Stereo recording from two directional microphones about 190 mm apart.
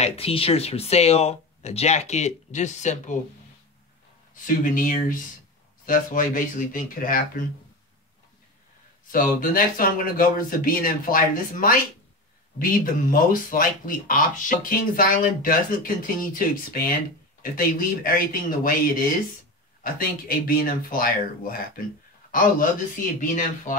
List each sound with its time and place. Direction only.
0.0 s speech: 30° left (ahead or behind)
4.5 s speech: 45° left (ahead or behind)
9.1 s speech: 45° left (ahead or behind)